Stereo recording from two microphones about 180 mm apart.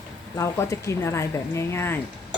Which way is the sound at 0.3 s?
15° left (ahead or behind).